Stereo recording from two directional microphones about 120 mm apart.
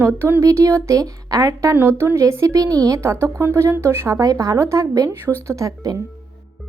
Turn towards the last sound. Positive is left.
turn(degrees=-30)  # may be behind; listen again after turning